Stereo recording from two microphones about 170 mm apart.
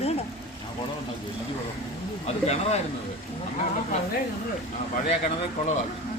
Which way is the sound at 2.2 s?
40° left (ahead or behind).